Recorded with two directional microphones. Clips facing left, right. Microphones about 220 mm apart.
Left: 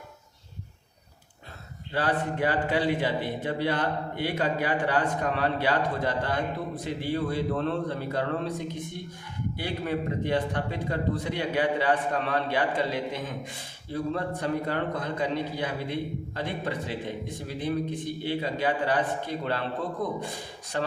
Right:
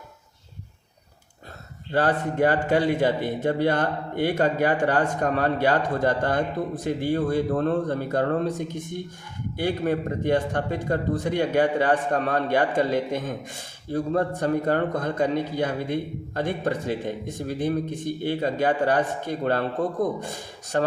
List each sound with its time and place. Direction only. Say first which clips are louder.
1.9 s a man's voice: right 5 dB; 45° right (ahead or behind)